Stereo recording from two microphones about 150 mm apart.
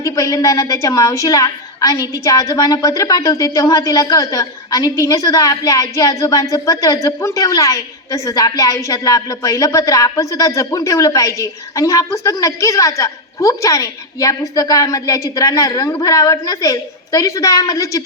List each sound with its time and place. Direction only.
0.0 s a woman's voice: 20° left (ahead or behind)